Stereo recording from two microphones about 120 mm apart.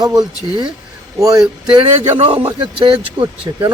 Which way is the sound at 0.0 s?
35° right (ahead or behind).